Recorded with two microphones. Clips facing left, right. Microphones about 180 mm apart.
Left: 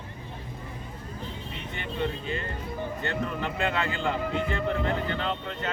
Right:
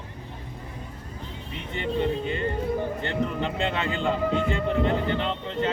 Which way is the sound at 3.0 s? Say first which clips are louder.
Right 3 dB; 25° right (ahead or behind).